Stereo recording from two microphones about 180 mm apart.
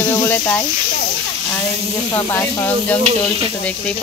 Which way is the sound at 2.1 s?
15° left (ahead or behind).